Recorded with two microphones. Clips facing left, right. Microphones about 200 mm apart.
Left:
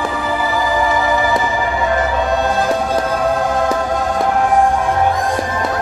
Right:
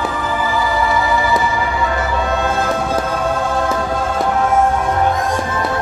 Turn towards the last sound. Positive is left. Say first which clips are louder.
# left 1 dB
turn(degrees=15)  # may be behind; listen again after turning